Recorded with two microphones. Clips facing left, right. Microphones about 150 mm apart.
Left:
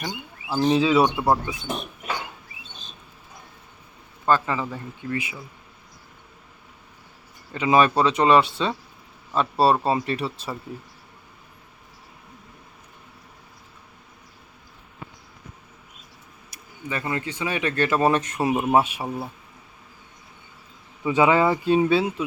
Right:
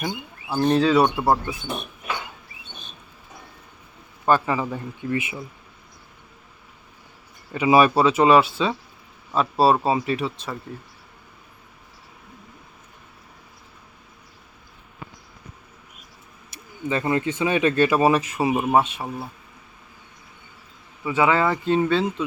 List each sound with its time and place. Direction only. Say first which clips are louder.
0.5 s speech: right 1 dB; centre (ahead or behind)
4.3 s speech: right 2 dB; 15° right (ahead or behind)
7.5 s speech: right 2 dB; 10° right (ahead or behind)
16.5 s speech: right 6 dB; 25° right (ahead or behind)
18.0 s speech: right 2 dB; 5° right (ahead or behind)
21.0 s speech: left 2 dB; 20° left (ahead or behind)